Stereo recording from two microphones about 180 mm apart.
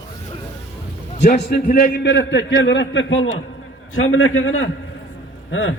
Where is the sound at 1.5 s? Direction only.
55° left (ahead or behind).